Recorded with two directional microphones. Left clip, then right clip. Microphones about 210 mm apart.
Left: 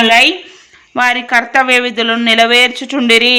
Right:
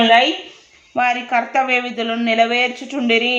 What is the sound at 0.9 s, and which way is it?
Speech, 15° left (ahead or behind).